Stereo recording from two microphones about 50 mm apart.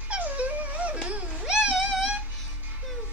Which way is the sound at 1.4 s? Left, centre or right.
Centre.